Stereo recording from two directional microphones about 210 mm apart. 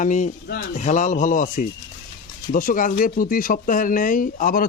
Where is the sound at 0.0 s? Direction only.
35° left (ahead or behind).